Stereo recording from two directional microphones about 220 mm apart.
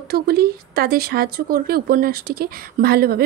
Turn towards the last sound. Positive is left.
turn(degrees=-45)  # may be behind; listen again after turning